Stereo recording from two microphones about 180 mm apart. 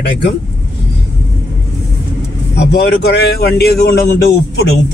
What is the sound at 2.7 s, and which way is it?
A man's voice, 60° left (ahead or behind).